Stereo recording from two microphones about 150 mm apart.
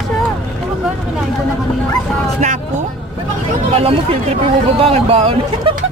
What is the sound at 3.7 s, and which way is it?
Speech, 40° right (ahead or behind).